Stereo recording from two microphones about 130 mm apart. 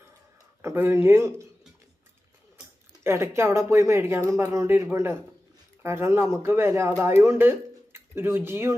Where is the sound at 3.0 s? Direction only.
20° right (ahead or behind).